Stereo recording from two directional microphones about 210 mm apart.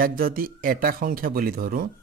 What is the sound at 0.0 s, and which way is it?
A man's voice, 45° right (ahead or behind).